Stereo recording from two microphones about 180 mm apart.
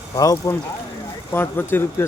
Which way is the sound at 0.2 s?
20° left (ahead or behind).